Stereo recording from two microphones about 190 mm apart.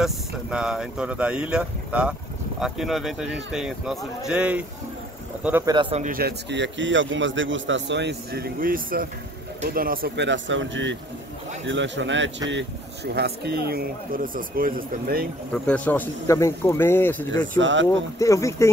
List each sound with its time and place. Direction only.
0.0 s a man's voice: 5° right (ahead or behind)
5.7 s speech: 25° right (ahead or behind)
6.0 s a man's voice: 50° right (ahead or behind)
15.5 s speech: 5° left (ahead or behind)
17.6 s a man's voice: 75° right (ahead or behind)
17.8 s speech: 15° left (ahead or behind)